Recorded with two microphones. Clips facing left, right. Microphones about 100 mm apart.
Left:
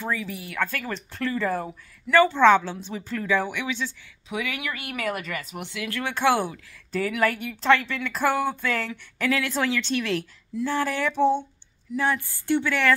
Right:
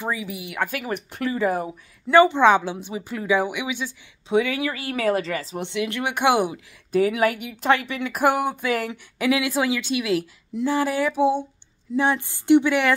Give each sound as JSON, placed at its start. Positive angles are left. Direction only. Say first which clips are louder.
{"t": 0.0, "sound": "speech", "louder": "right 1 dB", "side_deg": -15}
{"t": 4.3, "sound": "speech", "louder": "right 9 dB", "side_deg": -30}
{"t": 11.9, "sound": "a sound", "louder": "right 3 dB", "side_deg": -20}